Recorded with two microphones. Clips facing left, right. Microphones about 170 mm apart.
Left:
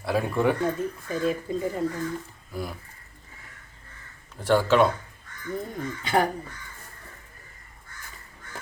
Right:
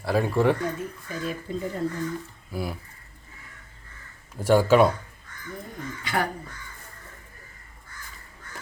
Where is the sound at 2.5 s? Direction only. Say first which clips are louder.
Right 2 dB; 5° right (ahead or behind).